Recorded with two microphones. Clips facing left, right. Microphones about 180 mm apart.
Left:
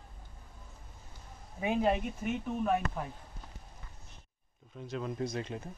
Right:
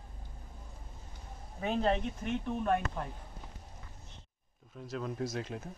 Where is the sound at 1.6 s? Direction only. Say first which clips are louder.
Left 1 dB; 10° left (ahead or behind).